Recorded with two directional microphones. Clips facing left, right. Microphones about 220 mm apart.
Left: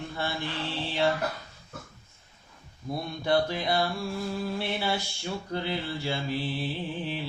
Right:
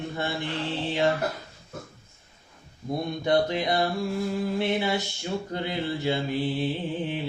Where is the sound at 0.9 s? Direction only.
20° right (ahead or behind).